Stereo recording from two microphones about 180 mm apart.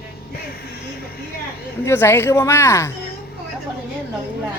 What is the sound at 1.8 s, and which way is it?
Speech, 15° left (ahead or behind).